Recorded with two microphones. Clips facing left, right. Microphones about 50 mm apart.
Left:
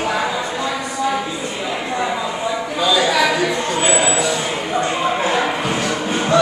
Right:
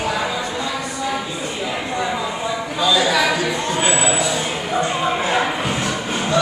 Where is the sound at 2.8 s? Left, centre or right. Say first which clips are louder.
Left 1 dB; centre.